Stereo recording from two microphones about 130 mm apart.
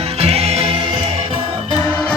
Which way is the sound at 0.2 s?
50° right (ahead or behind).